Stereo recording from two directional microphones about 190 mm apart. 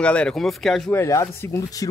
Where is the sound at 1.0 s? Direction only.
15° left (ahead or behind).